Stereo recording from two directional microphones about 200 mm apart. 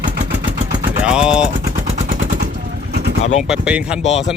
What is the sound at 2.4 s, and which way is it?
Vehicle, 55° right (ahead or behind).